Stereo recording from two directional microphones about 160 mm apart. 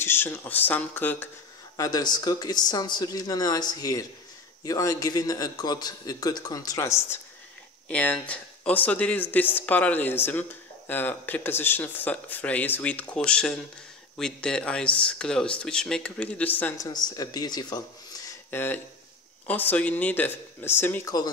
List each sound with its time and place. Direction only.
0.0 s speech: 15° left (ahead or behind)
1.8 s a man's voice: 25° left (ahead or behind)
16.7 s a man's voice: 25° left (ahead or behind)
18.5 s speech: 10° left (ahead or behind)